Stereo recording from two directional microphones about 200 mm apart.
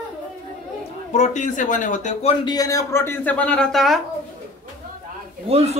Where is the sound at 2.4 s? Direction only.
20° left (ahead or behind); by 4.0 s centre (ahead or behind).